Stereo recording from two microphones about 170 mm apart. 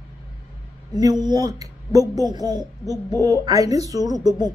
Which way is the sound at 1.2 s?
25° right (ahead or behind).